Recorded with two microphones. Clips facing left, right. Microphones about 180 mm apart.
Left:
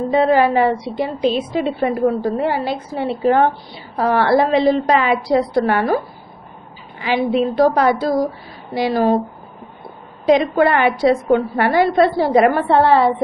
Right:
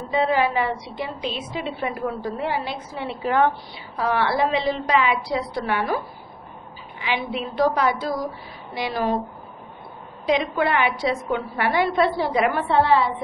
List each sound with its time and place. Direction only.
0.1 s a woman's voice: 45° left (ahead or behind)
4.0 s a woman's voice: 45° left (ahead or behind)
7.0 s a woman's voice: 40° left (ahead or behind)
10.2 s a woman's voice: 45° left (ahead or behind)